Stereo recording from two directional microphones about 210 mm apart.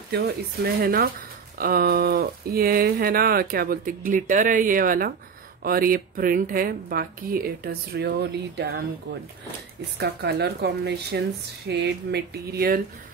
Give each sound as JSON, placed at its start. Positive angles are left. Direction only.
{"t": 0.1, "sound": "speech", "side_deg": -45}
{"t": 9.9, "sound": "speech", "side_deg": -50}